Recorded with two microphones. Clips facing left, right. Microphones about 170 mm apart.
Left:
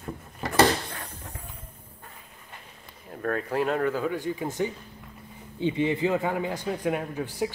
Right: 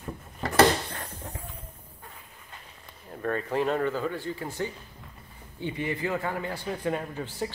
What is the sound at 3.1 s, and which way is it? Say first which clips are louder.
Speech: left 1 dB; centre (ahead or behind).